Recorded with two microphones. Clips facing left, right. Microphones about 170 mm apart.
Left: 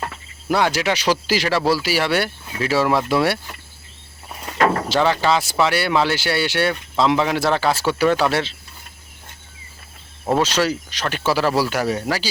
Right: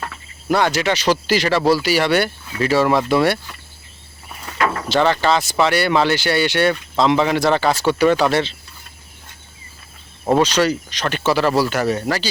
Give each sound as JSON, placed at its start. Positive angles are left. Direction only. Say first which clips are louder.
{"t": 0.4, "sound": "speech", "louder": "right 2 dB", "side_deg": 5}
{"t": 4.5, "sound": "a sound", "louder": "left 3 dB", "side_deg": 40}
{"t": 4.9, "sound": "speech", "louder": "right 1 dB", "side_deg": 5}
{"t": 10.3, "sound": "speech", "louder": "right 3 dB", "side_deg": 5}